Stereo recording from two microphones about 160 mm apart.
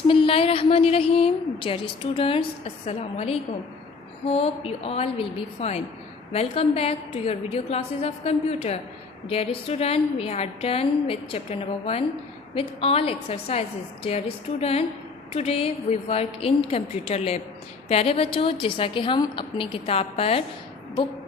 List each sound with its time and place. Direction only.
0.1 s a woman's voice: 35° left (ahead or behind)